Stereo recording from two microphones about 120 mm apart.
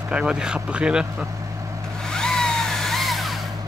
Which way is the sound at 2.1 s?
5° left (ahead or behind).